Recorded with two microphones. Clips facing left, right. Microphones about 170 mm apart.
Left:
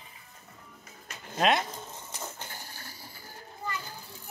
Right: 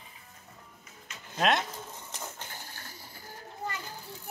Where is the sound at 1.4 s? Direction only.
Centre (ahead or behind).